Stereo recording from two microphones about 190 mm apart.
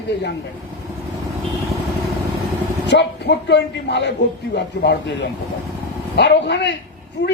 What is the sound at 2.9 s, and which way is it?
A man's voice, 65° left (ahead or behind).